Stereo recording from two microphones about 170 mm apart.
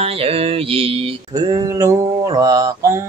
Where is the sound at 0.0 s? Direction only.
35° right (ahead or behind).